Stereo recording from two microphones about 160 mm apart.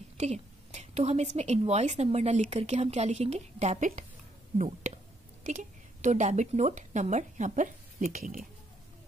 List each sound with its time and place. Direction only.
0.2 s a woman's voice: 45° right (ahead or behind); by 8.5 s 60° right (ahead or behind)